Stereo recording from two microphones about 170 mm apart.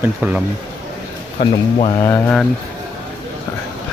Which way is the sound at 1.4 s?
30° left (ahead or behind).